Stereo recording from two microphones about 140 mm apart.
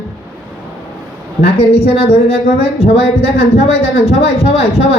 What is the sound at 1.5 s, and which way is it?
Speech, 45° left (ahead or behind).